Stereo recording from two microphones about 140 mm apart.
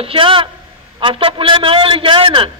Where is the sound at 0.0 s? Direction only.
40° right (ahead or behind).